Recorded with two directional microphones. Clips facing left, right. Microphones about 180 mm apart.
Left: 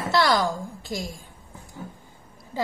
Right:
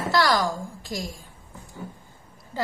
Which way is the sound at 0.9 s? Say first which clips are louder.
Left 1 dB; 25° left (ahead or behind).